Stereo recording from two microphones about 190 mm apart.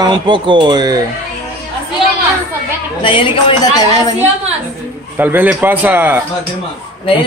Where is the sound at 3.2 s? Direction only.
25° left (ahead or behind).